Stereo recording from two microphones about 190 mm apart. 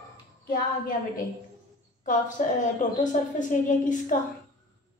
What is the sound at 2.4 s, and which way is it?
A woman's voice, 45° left (ahead or behind).